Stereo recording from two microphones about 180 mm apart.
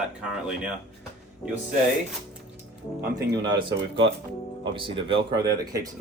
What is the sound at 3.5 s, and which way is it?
Speech, 30° right (ahead or behind).